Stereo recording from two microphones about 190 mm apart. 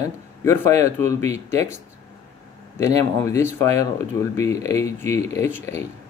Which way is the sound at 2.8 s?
15° left (ahead or behind).